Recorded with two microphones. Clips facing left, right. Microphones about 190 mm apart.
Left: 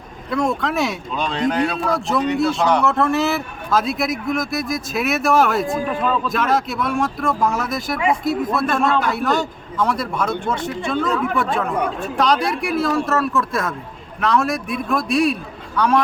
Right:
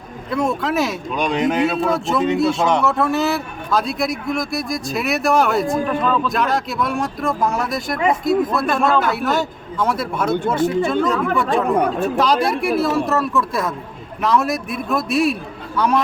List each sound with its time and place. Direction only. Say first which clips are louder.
0.3 s a man's voice: even; 5° right (ahead or behind)
1.1 s a man's voice: right 3 dB; 15° right (ahead or behind)
2.4 s a man's voice: even; centre (ahead or behind)